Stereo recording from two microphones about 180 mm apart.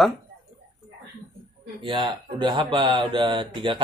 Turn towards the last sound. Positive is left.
turn(degrees=-25)  # may be behind; listen again after turning